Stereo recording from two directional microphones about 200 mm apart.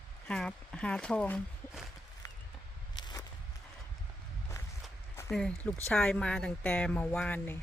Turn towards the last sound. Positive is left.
turn(degrees=5)  # may be behind; listen again after turning